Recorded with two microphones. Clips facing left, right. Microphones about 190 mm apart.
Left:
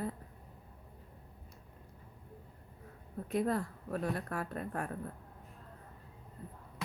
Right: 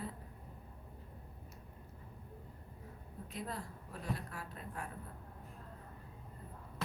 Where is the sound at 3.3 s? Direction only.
55° left (ahead or behind).